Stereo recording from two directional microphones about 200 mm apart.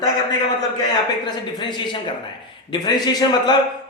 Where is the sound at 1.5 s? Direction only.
20° left (ahead or behind).